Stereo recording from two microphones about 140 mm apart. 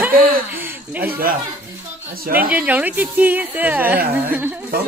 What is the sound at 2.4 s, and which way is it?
Speech, 10° right (ahead or behind).